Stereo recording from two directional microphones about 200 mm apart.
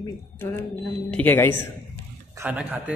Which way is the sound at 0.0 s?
10° left (ahead or behind).